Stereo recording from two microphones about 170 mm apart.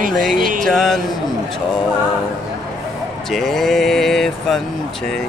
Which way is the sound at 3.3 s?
Centre (ahead or behind).